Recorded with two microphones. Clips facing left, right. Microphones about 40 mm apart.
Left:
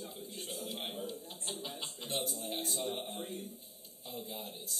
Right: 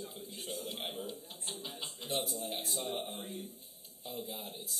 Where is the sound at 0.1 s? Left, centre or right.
Centre.